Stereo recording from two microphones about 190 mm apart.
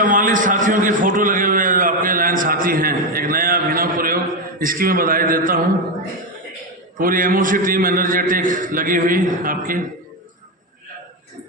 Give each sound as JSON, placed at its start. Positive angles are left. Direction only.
{"t": 0.0, "sound": "a sound", "side_deg": -45}
{"t": 4.6, "sound": "a man's voice", "side_deg": -50}
{"t": 7.0, "sound": "a man's voice", "side_deg": -45}